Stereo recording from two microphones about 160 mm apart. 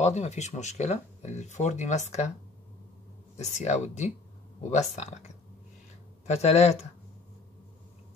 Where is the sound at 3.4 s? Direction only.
45° left (ahead or behind).